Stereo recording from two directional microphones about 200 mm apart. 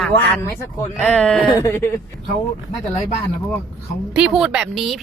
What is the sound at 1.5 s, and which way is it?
Speech, 15° left (ahead or behind).